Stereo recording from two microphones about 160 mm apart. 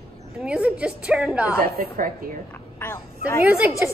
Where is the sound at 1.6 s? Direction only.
65° right (ahead or behind).